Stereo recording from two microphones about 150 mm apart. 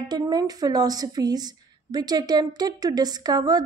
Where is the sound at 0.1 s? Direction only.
25° right (ahead or behind).